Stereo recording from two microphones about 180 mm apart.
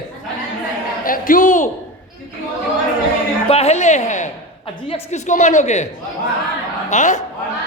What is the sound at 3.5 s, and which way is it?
A woman's voice, 35° left (ahead or behind).